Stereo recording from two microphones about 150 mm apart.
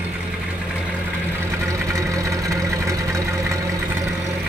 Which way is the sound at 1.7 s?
20° right (ahead or behind).